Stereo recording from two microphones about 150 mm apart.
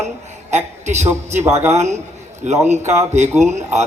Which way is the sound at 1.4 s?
15° right (ahead or behind).